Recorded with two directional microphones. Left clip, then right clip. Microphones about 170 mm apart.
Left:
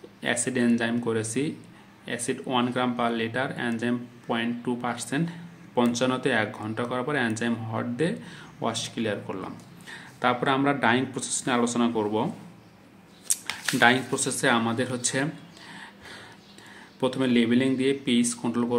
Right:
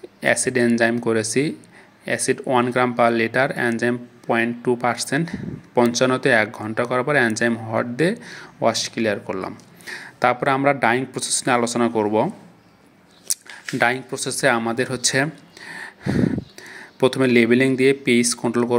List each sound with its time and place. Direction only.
0.2 s speech: 35° right (ahead or behind)
13.7 s speech: 40° right (ahead or behind)